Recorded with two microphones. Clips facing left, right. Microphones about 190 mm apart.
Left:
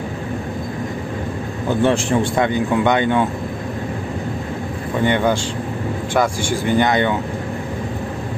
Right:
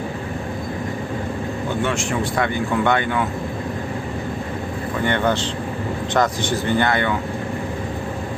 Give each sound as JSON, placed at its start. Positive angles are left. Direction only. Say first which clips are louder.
{"t": 1.8, "sound": "a man's voice", "louder": "left 7 dB", "side_deg": 35}
{"t": 2.4, "sound": "speech", "louder": "left 3 dB", "side_deg": 20}
{"t": 5.0, "sound": "speech", "louder": "left 3 dB", "side_deg": 15}